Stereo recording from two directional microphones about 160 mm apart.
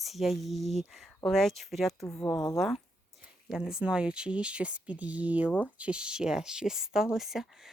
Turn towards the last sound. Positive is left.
turn(degrees=0)  # may be behind; listen again after turning